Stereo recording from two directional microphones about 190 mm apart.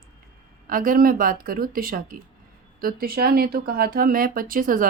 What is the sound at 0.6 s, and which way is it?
Speech, 45° right (ahead or behind).